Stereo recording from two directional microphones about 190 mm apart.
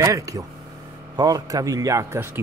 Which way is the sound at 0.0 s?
20° right (ahead or behind).